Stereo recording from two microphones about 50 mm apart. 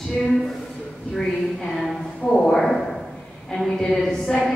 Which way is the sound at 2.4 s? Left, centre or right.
Centre.